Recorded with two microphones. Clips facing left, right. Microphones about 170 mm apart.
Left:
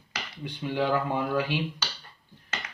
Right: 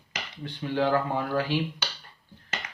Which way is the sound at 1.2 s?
15° left (ahead or behind).